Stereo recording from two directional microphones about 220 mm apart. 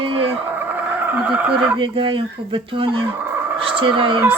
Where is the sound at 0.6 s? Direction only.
10° right (ahead or behind).